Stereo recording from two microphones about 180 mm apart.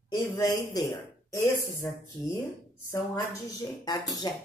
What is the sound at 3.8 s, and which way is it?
Speech, 20° left (ahead or behind).